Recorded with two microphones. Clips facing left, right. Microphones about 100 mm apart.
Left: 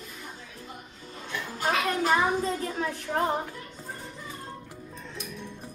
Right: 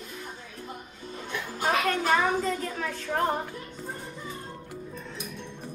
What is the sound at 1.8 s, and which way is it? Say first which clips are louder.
A child's voice: left 2 dB; 10° left (ahead or behind).